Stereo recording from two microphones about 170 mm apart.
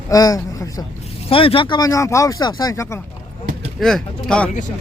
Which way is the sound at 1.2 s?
35° left (ahead or behind).